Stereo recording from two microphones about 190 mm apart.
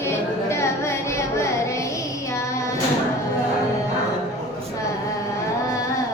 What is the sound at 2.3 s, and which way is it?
Child singing, 15° left (ahead or behind).